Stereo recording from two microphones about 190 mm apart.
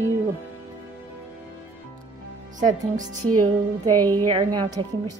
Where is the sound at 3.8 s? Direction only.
20° right (ahead or behind).